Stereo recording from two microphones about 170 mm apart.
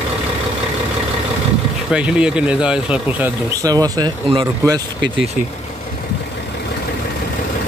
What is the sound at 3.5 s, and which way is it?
Speech, 20° right (ahead or behind).